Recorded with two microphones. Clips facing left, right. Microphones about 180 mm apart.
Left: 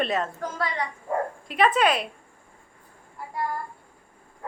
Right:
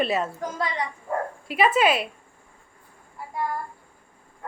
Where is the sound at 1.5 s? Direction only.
5° right (ahead or behind).